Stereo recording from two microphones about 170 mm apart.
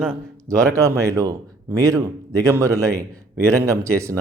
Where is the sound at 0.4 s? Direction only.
20° right (ahead or behind).